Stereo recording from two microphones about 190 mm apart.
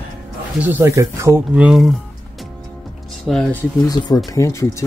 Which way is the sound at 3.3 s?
5° left (ahead or behind).